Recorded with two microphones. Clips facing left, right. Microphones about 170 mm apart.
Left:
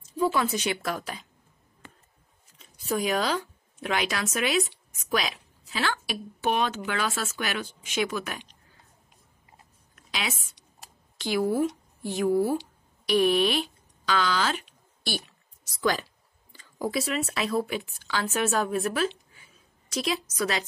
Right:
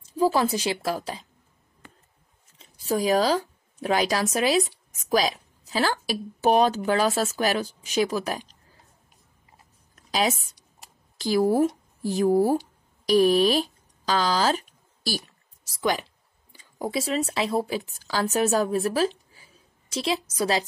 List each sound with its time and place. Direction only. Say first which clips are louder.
0.0 s a woman's voice: right 3 dB; 30° right (ahead or behind)
2.6 s speech: right 3 dB; 30° right (ahead or behind)
9.9 s a sound: right 9 dB; 40° right (ahead or behind)
15.8 s a woman's voice: right 1 dB; 20° right (ahead or behind)